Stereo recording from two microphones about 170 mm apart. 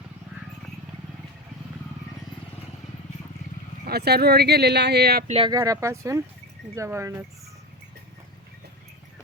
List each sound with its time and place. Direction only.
3.8 s speech: 70° right (ahead or behind)
5.5 s speech: 20° right (ahead or behind)